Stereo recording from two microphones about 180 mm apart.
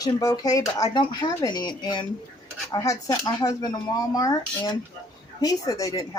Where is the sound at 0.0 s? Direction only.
20° left (ahead or behind).